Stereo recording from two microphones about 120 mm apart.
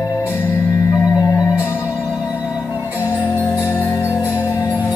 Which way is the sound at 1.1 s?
30° left (ahead or behind).